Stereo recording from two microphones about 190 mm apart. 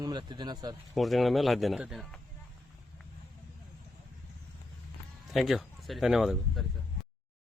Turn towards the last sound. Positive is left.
turn(degrees=0)  # may be behind; listen again after turning